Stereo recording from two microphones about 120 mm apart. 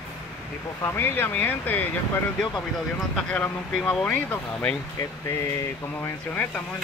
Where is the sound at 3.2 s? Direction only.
10° left (ahead or behind).